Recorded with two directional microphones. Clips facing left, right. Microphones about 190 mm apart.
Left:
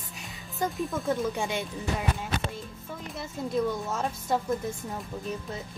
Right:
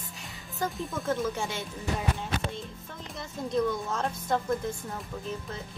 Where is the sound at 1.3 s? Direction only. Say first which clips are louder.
Left 3 dB; 15° left (ahead or behind).